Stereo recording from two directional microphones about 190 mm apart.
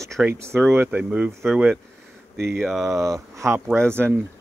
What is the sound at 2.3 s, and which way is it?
Speech, 60° right (ahead or behind).